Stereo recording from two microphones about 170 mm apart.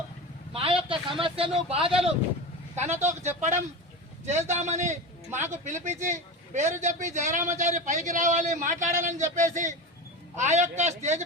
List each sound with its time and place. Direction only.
0.5 s a sound: 30° right (ahead or behind)
1.2 s speech: 30° right (ahead or behind)
2.8 s speech: 15° right (ahead or behind)
4.3 s a man's voice: 40° right (ahead or behind)